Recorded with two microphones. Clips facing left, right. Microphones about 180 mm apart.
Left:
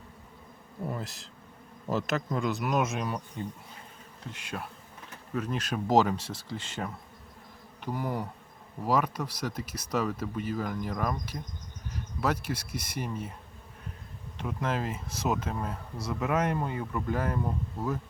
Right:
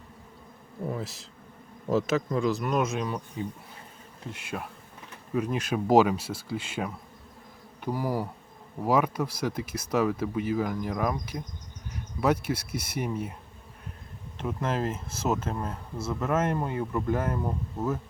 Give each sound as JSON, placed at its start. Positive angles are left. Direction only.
{"t": 0.9, "sound": "speech", "side_deg": 0}
{"t": 14.4, "sound": "speech", "side_deg": -5}